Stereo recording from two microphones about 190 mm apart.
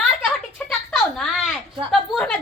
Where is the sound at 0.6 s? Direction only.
Centre (ahead or behind).